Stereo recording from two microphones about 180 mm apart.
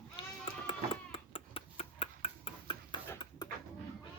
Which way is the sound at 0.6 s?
30° left (ahead or behind).